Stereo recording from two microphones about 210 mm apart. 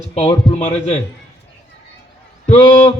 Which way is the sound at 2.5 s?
25° left (ahead or behind).